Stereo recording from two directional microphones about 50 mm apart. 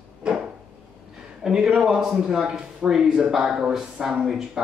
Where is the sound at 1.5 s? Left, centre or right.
Centre.